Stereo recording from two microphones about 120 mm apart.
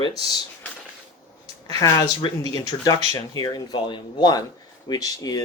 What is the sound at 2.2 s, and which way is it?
Speech, 45° left (ahead or behind).